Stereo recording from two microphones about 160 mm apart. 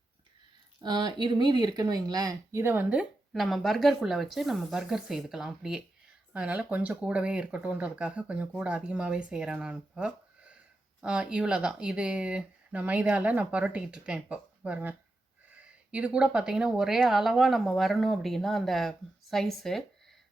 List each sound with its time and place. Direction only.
0.8 s speech: 25° right (ahead or behind); by 19.8 s centre (ahead or behind)